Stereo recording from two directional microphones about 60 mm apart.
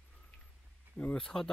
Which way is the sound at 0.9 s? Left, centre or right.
Centre.